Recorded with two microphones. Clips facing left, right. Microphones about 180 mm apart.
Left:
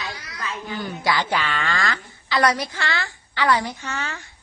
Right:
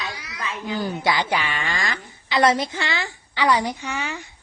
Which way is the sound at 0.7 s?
35° right (ahead or behind).